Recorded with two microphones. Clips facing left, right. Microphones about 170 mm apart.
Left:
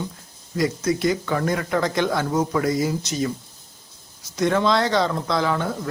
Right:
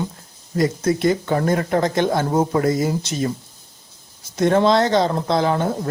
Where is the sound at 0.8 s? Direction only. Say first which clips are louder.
Right 3 dB; 50° right (ahead or behind).